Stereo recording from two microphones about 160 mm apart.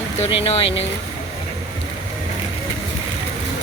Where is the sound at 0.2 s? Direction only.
40° left (ahead or behind).